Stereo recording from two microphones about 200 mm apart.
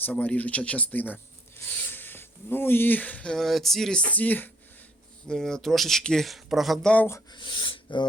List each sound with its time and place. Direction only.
0.0 s speech: 5° left (ahead or behind)
7.3 s speech: 25° left (ahead or behind)